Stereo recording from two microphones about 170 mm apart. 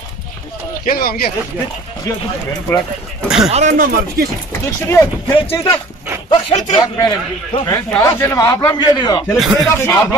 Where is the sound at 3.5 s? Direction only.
50° right (ahead or behind).